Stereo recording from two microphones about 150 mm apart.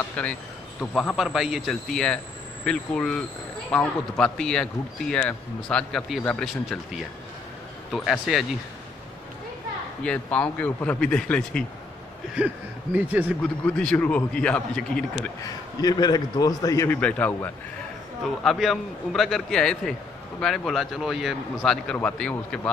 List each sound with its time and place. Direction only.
0.1 s a man's voice: 5° left (ahead or behind)
10.0 s a man's voice: 10° left (ahead or behind)
12.9 s a man's voice: 10° right (ahead or behind)
13.4 s a man's voice: 5° left (ahead or behind)
15.4 s a man's voice: 25° left (ahead or behind)
16.9 s a man's voice: 10° left (ahead or behind)
18.2 s a man's voice: centre (ahead or behind)
21.9 s a man's voice: 10° left (ahead or behind)